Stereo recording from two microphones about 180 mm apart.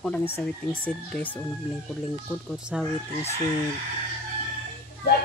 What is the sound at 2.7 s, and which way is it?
Speech, 5° right (ahead or behind).